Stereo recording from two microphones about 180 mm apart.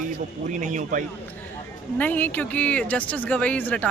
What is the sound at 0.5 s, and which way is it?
Speech, 45° right (ahead or behind).